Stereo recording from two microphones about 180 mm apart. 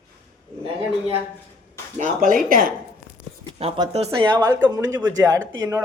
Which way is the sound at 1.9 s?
45° right (ahead or behind).